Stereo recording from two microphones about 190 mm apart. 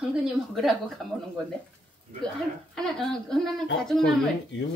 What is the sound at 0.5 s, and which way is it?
Speech, centre (ahead or behind).